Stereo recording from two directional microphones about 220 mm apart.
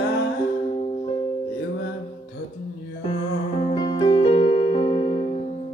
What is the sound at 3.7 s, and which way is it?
Music, 20° left (ahead or behind).